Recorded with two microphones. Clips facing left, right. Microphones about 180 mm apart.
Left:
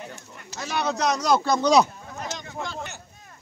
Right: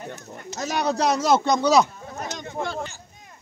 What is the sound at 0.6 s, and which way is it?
Speech, 40° right (ahead or behind).